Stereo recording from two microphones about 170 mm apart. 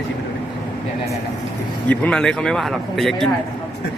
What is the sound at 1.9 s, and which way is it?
A man's voice, 5° left (ahead or behind).